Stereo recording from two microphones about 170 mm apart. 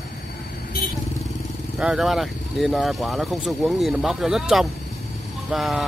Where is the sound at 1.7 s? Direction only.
5° right (ahead or behind).